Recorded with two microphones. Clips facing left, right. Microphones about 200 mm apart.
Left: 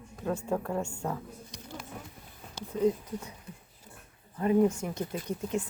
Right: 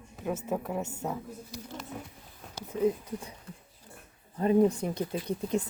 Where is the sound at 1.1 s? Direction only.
5° right (ahead or behind).